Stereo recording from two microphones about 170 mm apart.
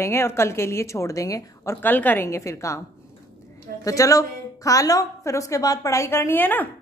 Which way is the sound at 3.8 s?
20° left (ahead or behind).